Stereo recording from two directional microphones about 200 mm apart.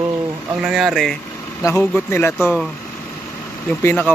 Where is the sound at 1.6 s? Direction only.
15° left (ahead or behind).